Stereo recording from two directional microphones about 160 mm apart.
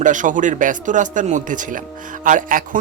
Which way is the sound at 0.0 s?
55° right (ahead or behind).